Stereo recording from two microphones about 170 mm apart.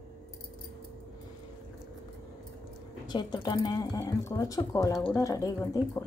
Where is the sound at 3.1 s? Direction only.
25° left (ahead or behind).